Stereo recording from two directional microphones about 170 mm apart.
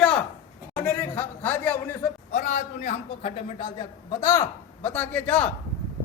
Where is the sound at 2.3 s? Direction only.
45° left (ahead or behind).